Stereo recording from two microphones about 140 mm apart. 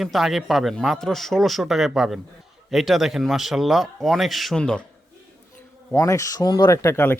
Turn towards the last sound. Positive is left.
turn(degrees=20)  # may be behind; listen again after turning